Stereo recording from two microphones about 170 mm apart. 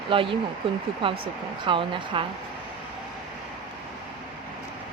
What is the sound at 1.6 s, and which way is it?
Speech, 30° right (ahead or behind).